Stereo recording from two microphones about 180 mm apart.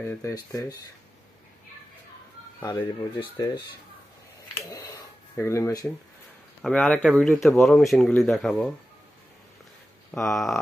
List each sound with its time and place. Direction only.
0.0 s speech: 15° left (ahead or behind)
2.6 s speech: 20° left (ahead or behind)
4.6 s a sound: 20° left (ahead or behind)
5.3 s speech: 15° left (ahead or behind)
6.6 s speech: 5° left (ahead or behind)
10.1 s speech: centre (ahead or behind)